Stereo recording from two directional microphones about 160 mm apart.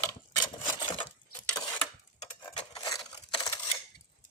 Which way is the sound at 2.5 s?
25° left (ahead or behind).